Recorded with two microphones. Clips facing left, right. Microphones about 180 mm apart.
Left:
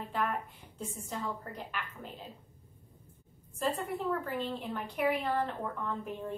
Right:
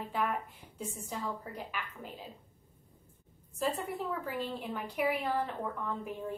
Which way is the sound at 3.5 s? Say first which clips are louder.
Left 1 dB; centre (ahead or behind).